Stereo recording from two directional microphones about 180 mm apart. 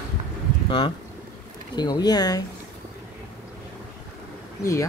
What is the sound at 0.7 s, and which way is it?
Speech, 25° left (ahead or behind).